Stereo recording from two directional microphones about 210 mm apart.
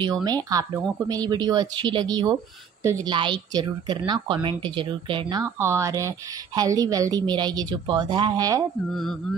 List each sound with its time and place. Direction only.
0.0 s speech: 20° right (ahead or behind)